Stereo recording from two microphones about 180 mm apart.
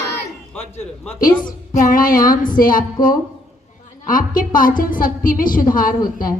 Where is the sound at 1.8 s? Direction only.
50° left (ahead or behind).